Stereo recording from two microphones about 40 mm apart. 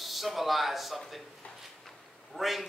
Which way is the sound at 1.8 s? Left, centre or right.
Centre.